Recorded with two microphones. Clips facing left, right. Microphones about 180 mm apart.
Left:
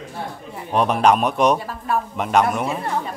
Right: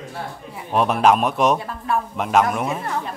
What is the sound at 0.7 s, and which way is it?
Speech, centre (ahead or behind).